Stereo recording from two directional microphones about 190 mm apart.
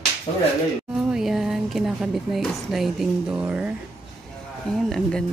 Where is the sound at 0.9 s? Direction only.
Centre (ahead or behind).